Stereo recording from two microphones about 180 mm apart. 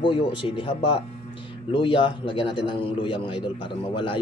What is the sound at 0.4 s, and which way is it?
A man's voice, 30° left (ahead or behind).